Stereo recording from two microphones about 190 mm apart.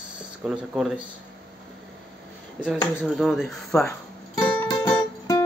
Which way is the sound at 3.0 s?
Centre (ahead or behind).